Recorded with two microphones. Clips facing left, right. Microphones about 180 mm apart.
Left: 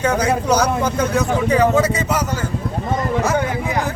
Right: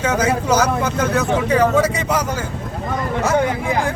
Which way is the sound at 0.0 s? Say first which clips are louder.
Even; 5° right (ahead or behind).